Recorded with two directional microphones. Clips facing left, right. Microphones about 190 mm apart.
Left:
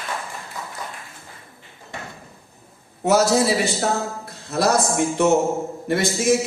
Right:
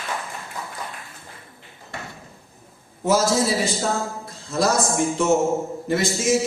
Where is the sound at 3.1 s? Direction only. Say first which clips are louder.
Left 2 dB; 65° left (ahead or behind).